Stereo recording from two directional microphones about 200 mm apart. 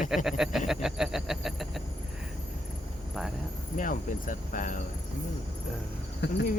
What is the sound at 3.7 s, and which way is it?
Speech, 40° left (ahead or behind).